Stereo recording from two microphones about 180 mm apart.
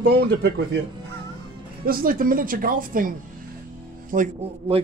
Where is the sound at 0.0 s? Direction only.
65° right (ahead or behind).